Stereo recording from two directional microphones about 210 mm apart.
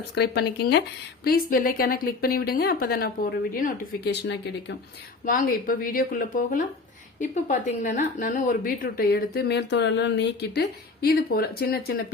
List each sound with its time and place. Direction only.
0.1 s a woman's voice: 55° left (ahead or behind)
5.2 s a woman's voice: 40° left (ahead or behind)